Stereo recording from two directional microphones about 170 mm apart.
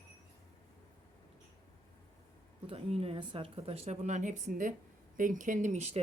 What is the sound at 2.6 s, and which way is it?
Speech, 35° right (ahead or behind).